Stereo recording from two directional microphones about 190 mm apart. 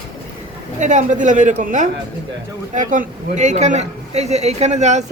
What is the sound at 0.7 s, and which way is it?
A man's voice, 40° right (ahead or behind).